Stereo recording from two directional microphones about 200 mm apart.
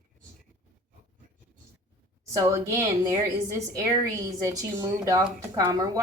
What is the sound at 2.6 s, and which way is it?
A woman's voice, 15° right (ahead or behind).